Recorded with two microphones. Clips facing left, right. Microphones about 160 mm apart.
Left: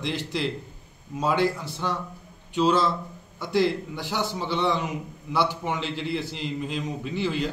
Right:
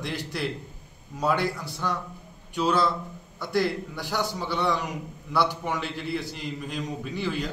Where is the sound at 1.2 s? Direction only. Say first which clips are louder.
Left 2 dB; 20° left (ahead or behind).